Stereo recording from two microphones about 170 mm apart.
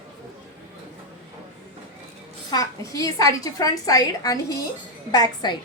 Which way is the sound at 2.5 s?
20° left (ahead or behind).